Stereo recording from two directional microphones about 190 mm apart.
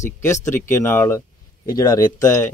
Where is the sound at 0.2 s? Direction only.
15° left (ahead or behind).